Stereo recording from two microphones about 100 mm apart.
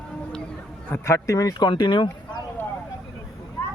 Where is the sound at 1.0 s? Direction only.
30° left (ahead or behind); by 2.4 s 50° left (ahead or behind).